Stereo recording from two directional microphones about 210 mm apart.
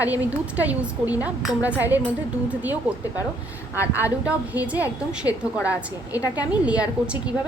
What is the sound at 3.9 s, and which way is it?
A woman's voice, 10° right (ahead or behind).